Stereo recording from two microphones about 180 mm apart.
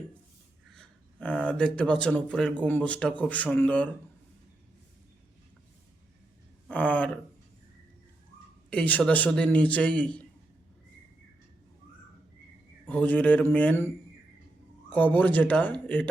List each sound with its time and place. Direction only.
0.7 s speech: 5° left (ahead or behind)
6.7 s speech: 5° left (ahead or behind)
8.7 s speech: 10° left (ahead or behind)
12.9 s speech: 10° left (ahead or behind)
14.9 s speech: 10° left (ahead or behind)